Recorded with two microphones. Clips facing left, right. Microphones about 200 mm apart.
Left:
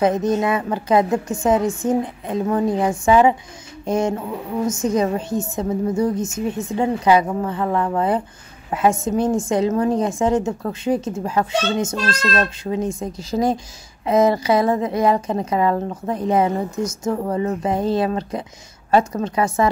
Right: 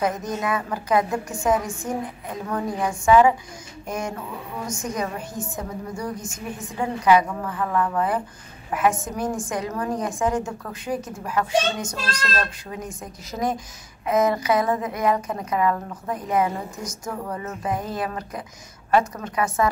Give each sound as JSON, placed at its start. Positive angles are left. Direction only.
{"t": 0.0, "sound": "a woman's voice", "side_deg": 25}